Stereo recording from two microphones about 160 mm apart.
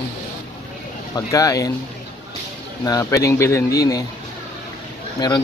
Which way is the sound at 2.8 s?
20° left (ahead or behind).